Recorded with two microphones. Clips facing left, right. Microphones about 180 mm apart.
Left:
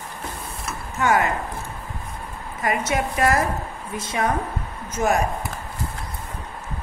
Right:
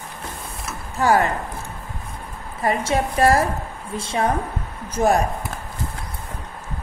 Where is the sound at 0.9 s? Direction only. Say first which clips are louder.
Right 2 dB; 35° right (ahead or behind).